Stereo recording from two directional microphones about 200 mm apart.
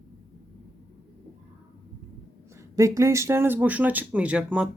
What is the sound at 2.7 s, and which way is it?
Speech, 15° right (ahead or behind).